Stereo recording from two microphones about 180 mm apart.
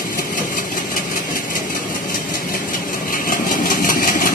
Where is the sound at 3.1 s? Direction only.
50° left (ahead or behind).